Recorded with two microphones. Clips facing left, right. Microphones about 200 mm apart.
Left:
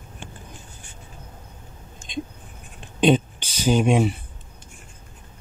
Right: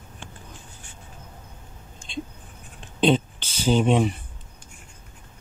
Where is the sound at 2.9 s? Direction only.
15° left (ahead or behind).